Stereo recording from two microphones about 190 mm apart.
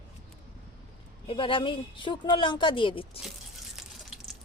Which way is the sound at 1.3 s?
25° left (ahead or behind).